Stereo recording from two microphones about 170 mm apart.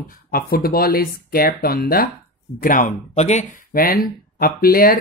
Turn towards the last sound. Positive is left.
turn(degrees=60)  # may be behind; listen again after turning